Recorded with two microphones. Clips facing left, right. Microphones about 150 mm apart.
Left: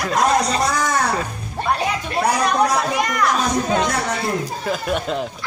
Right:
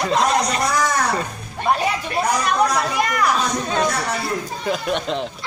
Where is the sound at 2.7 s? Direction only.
Centre (ahead or behind).